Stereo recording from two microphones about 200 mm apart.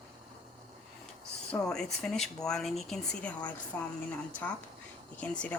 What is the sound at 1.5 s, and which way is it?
Speech, 5° left (ahead or behind).